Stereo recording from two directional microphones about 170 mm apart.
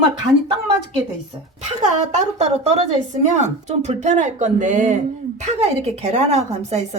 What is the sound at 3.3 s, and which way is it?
Speech, 40° right (ahead or behind).